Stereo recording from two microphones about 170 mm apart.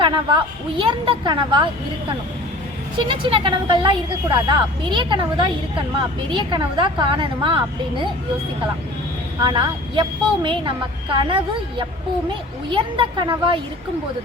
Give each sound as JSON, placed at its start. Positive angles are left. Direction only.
{"t": 0.0, "sound": "speech", "side_deg": -30}
{"t": 3.1, "sound": "speech", "side_deg": -30}
{"t": 9.4, "sound": "speech", "side_deg": -30}
{"t": 12.7, "sound": "speech", "side_deg": -30}